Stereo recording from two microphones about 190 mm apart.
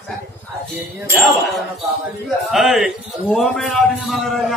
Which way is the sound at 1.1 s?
Centre (ahead or behind).